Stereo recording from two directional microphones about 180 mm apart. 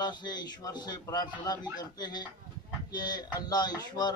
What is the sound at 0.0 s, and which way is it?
A man's voice, 25° left (ahead or behind).